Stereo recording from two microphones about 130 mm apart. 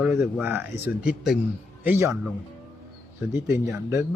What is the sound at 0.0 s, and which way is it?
Speech, 5° right (ahead or behind).